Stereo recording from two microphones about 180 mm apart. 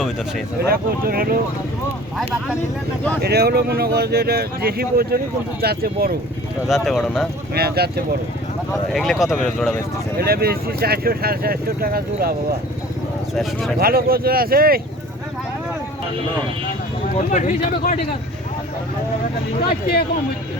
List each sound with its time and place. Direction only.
0.7 s speech: 55° right (ahead or behind)
3.2 s speech: 60° right (ahead or behind)
6.7 s speech: centre (ahead or behind)
7.5 s speech: 60° right (ahead or behind)
8.9 s speech: centre (ahead or behind)
10.2 s speech: 60° right (ahead or behind)
13.3 s speech: centre (ahead or behind)
13.7 s speech: 55° right (ahead or behind)
17.2 s speech: 40° left (ahead or behind)